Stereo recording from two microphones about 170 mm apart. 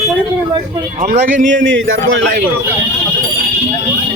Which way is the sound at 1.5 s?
90° right.